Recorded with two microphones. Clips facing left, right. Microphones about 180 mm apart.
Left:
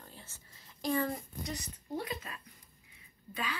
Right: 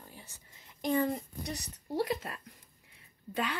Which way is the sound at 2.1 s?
55° right (ahead or behind).